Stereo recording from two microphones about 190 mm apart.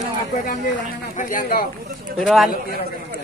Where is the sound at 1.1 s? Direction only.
45° left (ahead or behind).